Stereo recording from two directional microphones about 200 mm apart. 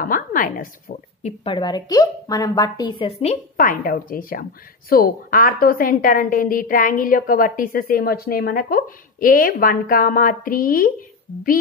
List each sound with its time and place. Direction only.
0.0 s a woman's voice: 45° left (ahead or behind)
1.4 s a woman's voice: 25° left (ahead or behind); by 11.5 s 45° left (ahead or behind)